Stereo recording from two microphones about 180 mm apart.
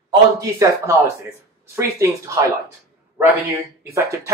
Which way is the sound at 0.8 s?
15° right (ahead or behind).